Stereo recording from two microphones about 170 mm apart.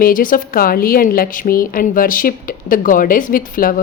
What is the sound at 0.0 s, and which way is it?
A woman's voice, 55° left (ahead or behind).